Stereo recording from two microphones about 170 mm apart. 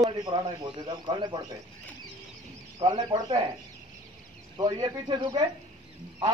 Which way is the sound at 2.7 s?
25° right (ahead or behind).